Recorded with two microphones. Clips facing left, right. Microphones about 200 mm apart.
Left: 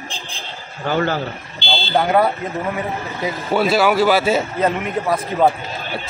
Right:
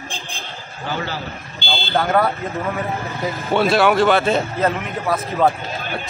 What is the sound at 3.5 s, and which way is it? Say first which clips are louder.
A man's voice: even; 5° left (ahead or behind).